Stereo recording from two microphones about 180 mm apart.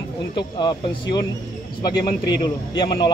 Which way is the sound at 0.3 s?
25° left (ahead or behind).